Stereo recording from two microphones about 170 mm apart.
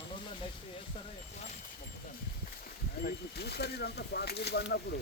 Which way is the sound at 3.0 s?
70° left (ahead or behind).